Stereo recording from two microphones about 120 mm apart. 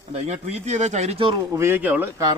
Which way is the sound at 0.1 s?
65° right (ahead or behind).